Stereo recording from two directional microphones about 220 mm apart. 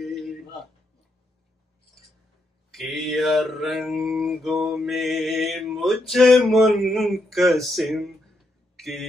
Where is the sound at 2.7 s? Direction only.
Centre (ahead or behind).